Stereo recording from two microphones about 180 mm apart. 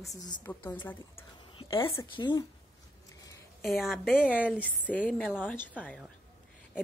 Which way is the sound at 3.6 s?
Centre (ahead or behind).